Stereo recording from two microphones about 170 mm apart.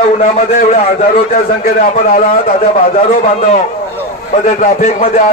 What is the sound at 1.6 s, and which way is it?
Speech, 60° left (ahead or behind).